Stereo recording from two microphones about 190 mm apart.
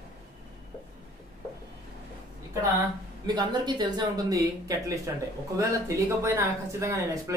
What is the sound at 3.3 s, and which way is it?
Speech, 25° right (ahead or behind).